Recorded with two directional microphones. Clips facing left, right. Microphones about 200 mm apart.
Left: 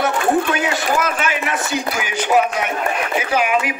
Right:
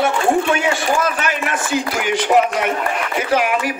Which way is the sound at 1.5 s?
55° right (ahead or behind).